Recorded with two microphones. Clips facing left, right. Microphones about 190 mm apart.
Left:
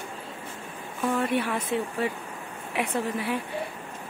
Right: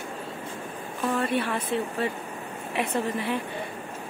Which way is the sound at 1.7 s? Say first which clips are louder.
Even; 15° left (ahead or behind).